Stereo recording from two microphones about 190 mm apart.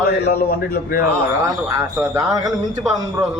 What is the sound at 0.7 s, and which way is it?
Speech, 50° left (ahead or behind).